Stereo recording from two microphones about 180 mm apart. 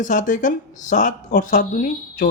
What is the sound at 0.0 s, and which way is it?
Speech, 45° left (ahead or behind).